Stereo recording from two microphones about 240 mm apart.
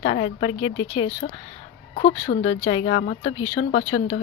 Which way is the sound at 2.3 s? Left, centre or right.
Left.